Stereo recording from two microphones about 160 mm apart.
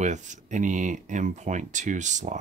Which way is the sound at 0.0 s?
50° right (ahead or behind).